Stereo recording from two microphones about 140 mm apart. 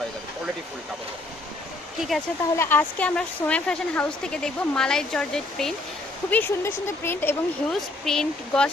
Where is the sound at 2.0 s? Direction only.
Centre (ahead or behind).